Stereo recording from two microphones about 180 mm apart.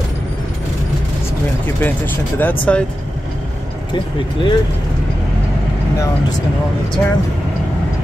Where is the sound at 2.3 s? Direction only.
10° left (ahead or behind).